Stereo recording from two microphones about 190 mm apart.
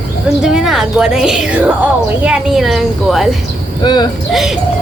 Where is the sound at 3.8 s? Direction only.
20° left (ahead or behind).